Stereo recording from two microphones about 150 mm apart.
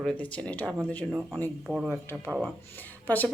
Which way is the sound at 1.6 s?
5° right (ahead or behind).